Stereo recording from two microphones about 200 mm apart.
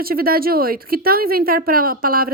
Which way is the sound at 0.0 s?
50° right (ahead or behind).